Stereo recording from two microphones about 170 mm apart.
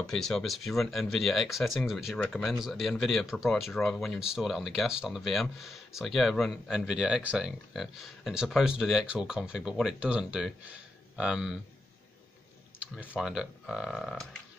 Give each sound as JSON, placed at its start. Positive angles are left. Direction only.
{"t": 0.0, "sound": "speech", "side_deg": 5}
{"t": 12.7, "sound": "speech", "side_deg": -5}